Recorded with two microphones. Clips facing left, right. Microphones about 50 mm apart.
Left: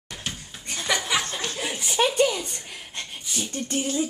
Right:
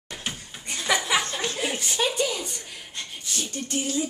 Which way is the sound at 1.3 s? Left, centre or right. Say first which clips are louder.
Right 2 dB; centre.